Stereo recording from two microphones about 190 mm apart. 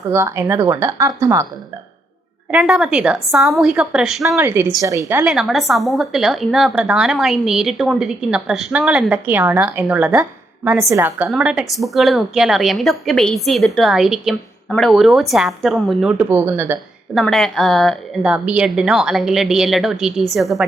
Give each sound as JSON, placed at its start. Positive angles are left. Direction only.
{"t": 0.1, "sound": "speech", "side_deg": -15}
{"t": 2.5, "sound": "a woman's voice", "side_deg": -5}
{"t": 4.4, "sound": "speech", "side_deg": -10}
{"t": 5.2, "sound": "a woman's voice", "side_deg": 0}
{"t": 17.2, "sound": "a woman's voice", "side_deg": 0}